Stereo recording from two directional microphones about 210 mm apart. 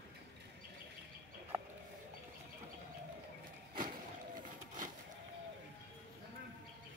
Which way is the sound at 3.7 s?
40° right (ahead or behind).